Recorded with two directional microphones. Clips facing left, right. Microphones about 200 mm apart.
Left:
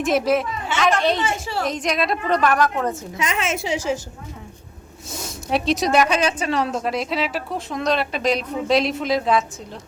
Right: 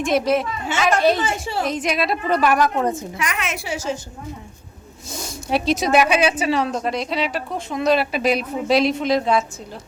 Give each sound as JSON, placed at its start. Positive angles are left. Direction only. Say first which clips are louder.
{"t": 0.0, "sound": "a woman's voice", "louder": "even", "side_deg": 0}
{"t": 1.2, "sound": "a woman's voice", "louder": "right 1 dB", "side_deg": -25}
{"t": 1.6, "sound": "a woman's voice", "louder": "even", "side_deg": -5}
{"t": 3.2, "sound": "a woman's voice", "louder": "left 2 dB", "side_deg": 25}
{"t": 5.1, "sound": "a woman's voice", "louder": "right 1 dB", "side_deg": 0}